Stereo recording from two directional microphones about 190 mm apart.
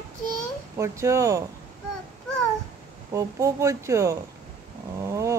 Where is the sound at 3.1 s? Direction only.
15° right (ahead or behind).